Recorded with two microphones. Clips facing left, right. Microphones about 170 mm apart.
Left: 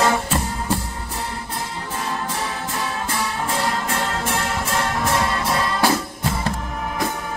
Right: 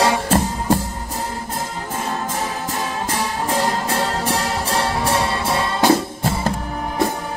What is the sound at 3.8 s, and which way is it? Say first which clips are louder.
Music: right 3 dB; 35° right (ahead or behind).